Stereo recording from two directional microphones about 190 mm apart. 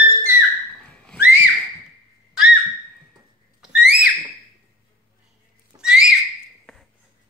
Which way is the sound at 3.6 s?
5° right (ahead or behind).